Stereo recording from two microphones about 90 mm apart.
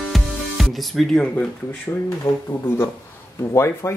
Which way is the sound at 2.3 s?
40° left (ahead or behind).